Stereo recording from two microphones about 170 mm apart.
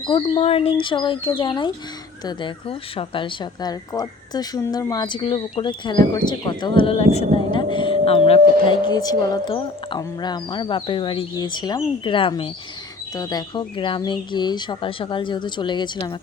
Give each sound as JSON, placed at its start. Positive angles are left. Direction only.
{"t": 0.0, "sound": "speech", "side_deg": 30}